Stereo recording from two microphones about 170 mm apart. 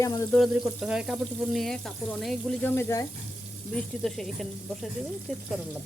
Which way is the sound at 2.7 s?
15° left (ahead or behind).